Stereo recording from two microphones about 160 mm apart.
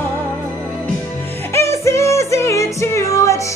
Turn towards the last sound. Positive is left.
turn(degrees=20)  # may be behind; listen again after turning